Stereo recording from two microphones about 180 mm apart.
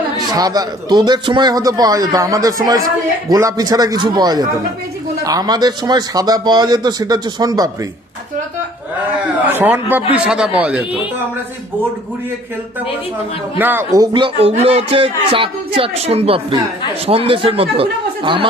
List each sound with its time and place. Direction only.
0.2 s a man's voice: 20° right (ahead or behind)
9.6 s speech: 10° right (ahead or behind)
13.6 s speech: 10° right (ahead or behind); by 18.4 s 30° right (ahead or behind)